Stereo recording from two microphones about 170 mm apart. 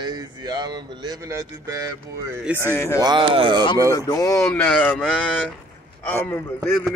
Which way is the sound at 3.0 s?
30° right (ahead or behind).